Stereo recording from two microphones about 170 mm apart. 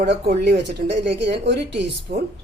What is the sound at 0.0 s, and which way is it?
A woman's voice, 85° right.